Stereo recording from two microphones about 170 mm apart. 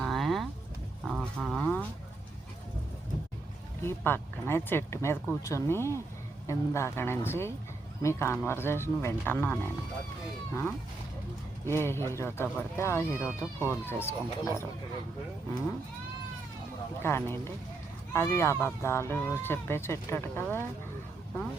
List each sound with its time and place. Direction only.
0.0 s vehicle: centre (ahead or behind)
1.0 s livestock: 5° right (ahead or behind)
3.8 s speech: 15° left (ahead or behind)
17.0 s speech: 15° left (ahead or behind)